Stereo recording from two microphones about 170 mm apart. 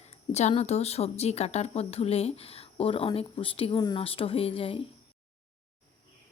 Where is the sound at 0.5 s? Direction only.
40° left (ahead or behind).